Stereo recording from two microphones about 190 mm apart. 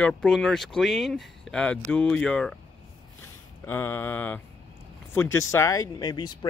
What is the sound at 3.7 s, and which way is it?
Speech, 10° left (ahead or behind).